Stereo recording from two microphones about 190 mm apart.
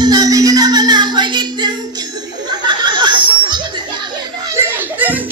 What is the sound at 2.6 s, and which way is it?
Chuckle, 25° right (ahead or behind).